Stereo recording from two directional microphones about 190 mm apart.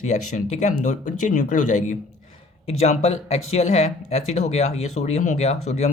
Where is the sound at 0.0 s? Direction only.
40° left (ahead or behind).